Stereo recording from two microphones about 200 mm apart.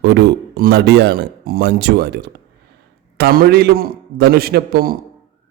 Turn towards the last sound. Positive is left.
turn(degrees=-50)  # may be behind; listen again after turning